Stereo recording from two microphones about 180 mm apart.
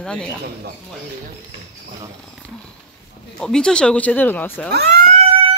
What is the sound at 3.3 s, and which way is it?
Speech, 5° left (ahead or behind).